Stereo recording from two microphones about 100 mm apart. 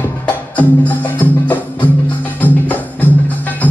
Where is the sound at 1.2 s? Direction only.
15° left (ahead or behind).